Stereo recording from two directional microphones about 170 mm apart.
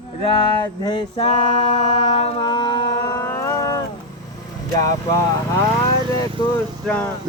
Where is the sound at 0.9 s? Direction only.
30° left (ahead or behind).